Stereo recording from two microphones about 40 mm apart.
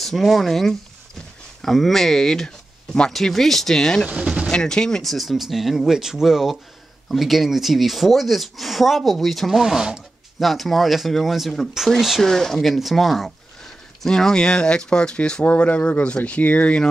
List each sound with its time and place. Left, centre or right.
0.0 s speech: centre
5.0 s speech: centre
10.4 s speech: centre
12.2 s speech: centre
14.0 s speech: centre
15.4 s speech: left